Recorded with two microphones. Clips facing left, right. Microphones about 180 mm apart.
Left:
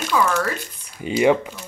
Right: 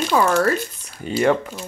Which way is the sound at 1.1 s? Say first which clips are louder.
Left 1 dB; 15° left (ahead or behind).